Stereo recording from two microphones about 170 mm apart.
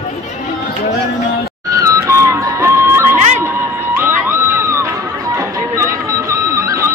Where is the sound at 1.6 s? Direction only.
20° right (ahead or behind).